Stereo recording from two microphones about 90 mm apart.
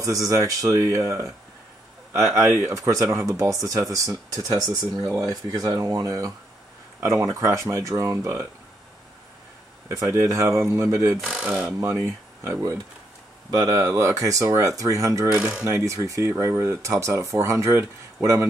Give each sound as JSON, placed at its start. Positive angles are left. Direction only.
{"t": 0.0, "sound": "speech", "side_deg": -40}
{"t": 2.3, "sound": "speech", "side_deg": -30}
{"t": 9.8, "sound": "speech", "side_deg": -30}
{"t": 13.5, "sound": "speech", "side_deg": -45}
{"t": 15.3, "sound": "speech", "side_deg": -10}
{"t": 15.6, "sound": "speech", "side_deg": -35}